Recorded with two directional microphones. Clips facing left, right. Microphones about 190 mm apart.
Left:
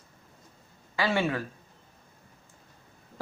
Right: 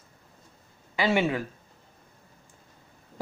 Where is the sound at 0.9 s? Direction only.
20° right (ahead or behind).